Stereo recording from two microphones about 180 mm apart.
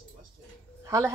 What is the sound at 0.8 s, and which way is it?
Speech, 15° right (ahead or behind).